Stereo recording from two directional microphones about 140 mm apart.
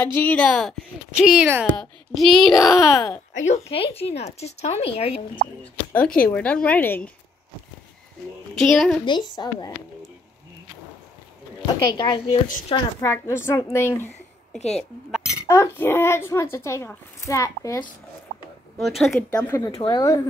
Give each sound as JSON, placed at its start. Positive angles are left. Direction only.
{"t": 0.0, "sound": "a woman's voice", "side_deg": 10}
{"t": 1.8, "sound": "a woman's voice", "side_deg": 0}
{"t": 2.8, "sound": "speech", "side_deg": 25}
{"t": 3.3, "sound": "speech", "side_deg": 50}
{"t": 5.6, "sound": "speech", "side_deg": 10}
{"t": 8.5, "sound": "a woman's voice", "side_deg": 5}
{"t": 9.0, "sound": "a woman's voice", "side_deg": 30}
{"t": 11.6, "sound": "a woman's voice", "side_deg": 30}
{"t": 13.0, "sound": "speech", "side_deg": 20}
{"t": 14.8, "sound": "speech", "side_deg": 0}
{"t": 15.4, "sound": "speech", "side_deg": 20}
{"t": 18.8, "sound": "a woman's voice", "side_deg": 0}
{"t": 19.5, "sound": "speech", "side_deg": 20}